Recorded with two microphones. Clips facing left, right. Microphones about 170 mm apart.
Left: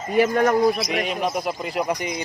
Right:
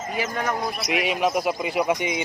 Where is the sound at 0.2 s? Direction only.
50° left (ahead or behind).